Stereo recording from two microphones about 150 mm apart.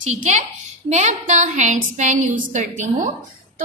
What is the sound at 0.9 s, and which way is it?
A woman's voice, 50° right (ahead or behind).